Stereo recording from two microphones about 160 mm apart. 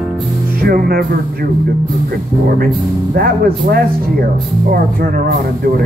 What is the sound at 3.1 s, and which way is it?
Speech, 75° right (ahead or behind).